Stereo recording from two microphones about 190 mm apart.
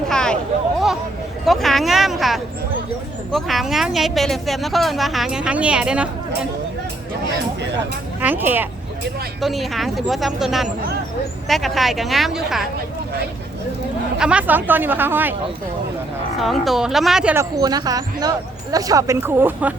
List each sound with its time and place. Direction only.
0.1 s a sound: 5° left (ahead or behind)
1.5 s a woman's voice: centre (ahead or behind)
8.2 s a woman's voice: 10° right (ahead or behind)
14.2 s speech: 5° right (ahead or behind)
16.4 s a woman's voice: centre (ahead or behind)
17.3 s speech: 20° right (ahead or behind)